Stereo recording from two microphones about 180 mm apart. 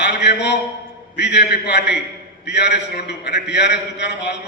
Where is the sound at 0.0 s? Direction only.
70° left (ahead or behind).